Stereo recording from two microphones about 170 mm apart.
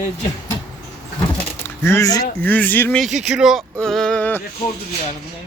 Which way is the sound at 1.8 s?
15° left (ahead or behind).